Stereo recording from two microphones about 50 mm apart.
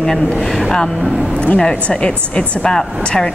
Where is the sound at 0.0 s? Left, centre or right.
Centre.